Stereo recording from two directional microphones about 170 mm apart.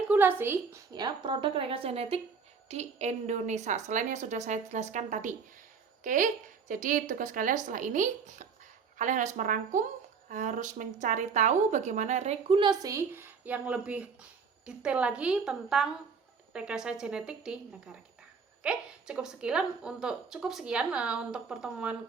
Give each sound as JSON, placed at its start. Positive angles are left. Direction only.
{"t": 0.1, "sound": "a woman's voice", "side_deg": -10}